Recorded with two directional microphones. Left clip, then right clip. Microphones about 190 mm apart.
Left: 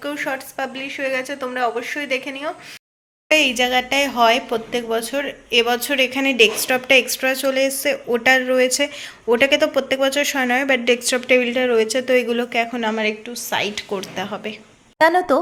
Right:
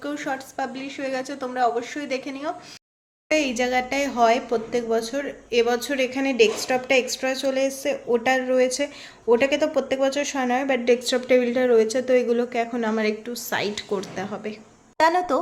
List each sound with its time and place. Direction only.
0.0 s a woman's voice: centre (ahead or behind)
14.9 s a woman's voice: 20° left (ahead or behind)